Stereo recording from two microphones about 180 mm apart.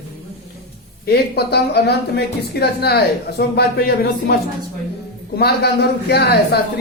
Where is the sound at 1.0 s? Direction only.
60° left (ahead or behind).